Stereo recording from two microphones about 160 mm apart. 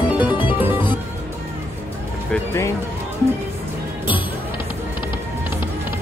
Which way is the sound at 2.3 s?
15° left (ahead or behind).